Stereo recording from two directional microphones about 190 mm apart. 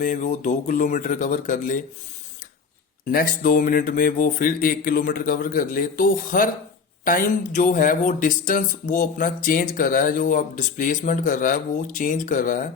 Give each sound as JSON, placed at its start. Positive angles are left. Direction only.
{"t": 0.0, "sound": "speech", "side_deg": 40}
{"t": 3.1, "sound": "speech", "side_deg": 45}